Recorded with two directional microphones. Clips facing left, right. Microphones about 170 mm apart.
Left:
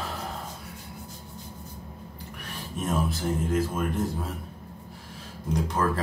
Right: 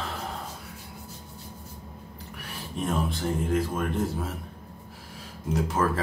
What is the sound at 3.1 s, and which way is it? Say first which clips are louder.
Speech: even; centre (ahead or behind).